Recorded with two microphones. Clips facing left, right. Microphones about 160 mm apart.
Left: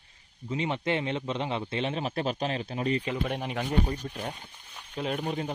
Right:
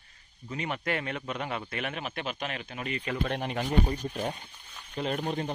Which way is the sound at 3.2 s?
5° left (ahead or behind).